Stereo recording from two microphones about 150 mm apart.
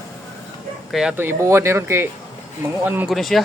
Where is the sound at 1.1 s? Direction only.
15° right (ahead or behind).